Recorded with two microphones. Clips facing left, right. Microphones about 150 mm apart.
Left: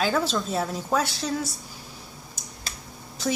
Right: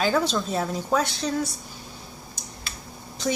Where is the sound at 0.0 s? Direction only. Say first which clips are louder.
Right 1 dB; centre (ahead or behind).